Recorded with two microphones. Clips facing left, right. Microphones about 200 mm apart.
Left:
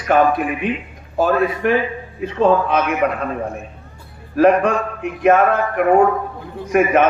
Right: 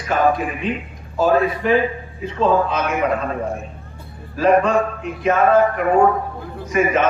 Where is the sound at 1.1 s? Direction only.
60° left (ahead or behind).